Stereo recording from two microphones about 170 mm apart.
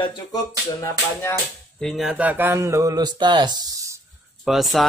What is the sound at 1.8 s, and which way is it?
Speech, centre (ahead or behind).